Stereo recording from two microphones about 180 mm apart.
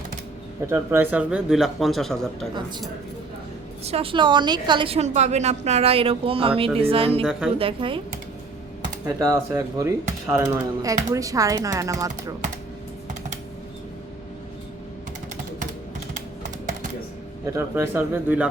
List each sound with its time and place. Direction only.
0.7 s speech: 15° right (ahead or behind); by 2.5 s centre (ahead or behind)
3.8 s a woman's voice: 30° right (ahead or behind)
7.3 s speech: 5° right (ahead or behind)
7.6 s speech: 30° right (ahead or behind)
9.0 s speech: 20° right (ahead or behind)
17.4 s speech: 15° right (ahead or behind)